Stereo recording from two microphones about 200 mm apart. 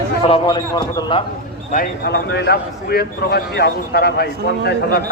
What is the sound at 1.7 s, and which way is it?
A man's voice, 50° left (ahead or behind).